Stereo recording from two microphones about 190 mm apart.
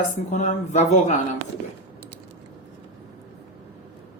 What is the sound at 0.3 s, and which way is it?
Speech, 40° left (ahead or behind).